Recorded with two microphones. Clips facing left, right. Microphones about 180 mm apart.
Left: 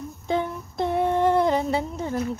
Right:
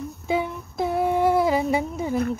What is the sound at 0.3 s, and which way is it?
Humming, 5° right (ahead or behind).